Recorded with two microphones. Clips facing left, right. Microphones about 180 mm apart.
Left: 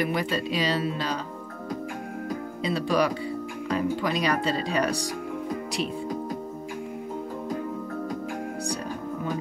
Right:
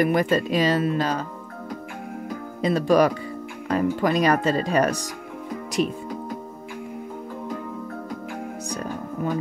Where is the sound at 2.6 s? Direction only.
45° right (ahead or behind).